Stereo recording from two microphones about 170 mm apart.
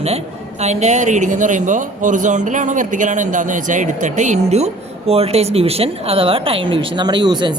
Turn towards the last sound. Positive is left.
turn(degrees=-25)  # may be behind; listen again after turning